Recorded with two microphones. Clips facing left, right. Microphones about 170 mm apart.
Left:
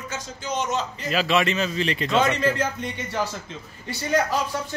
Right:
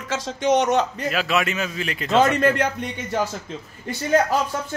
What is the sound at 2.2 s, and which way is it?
Speech, 55° right (ahead or behind).